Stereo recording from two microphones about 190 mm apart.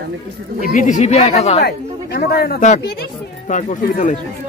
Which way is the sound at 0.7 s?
40° left (ahead or behind).